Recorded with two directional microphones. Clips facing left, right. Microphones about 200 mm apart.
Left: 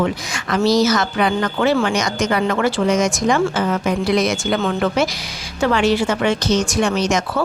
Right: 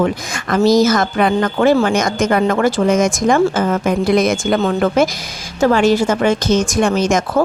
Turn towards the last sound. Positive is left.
turn(degrees=-50)  # may be behind; listen again after turning